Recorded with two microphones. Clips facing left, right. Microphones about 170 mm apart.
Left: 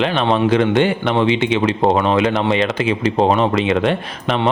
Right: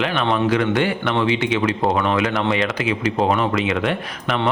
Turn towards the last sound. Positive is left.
turn(degrees=30)  # may be behind; listen again after turning